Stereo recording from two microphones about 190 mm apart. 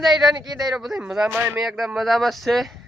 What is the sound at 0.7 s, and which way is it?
Speech, centre (ahead or behind).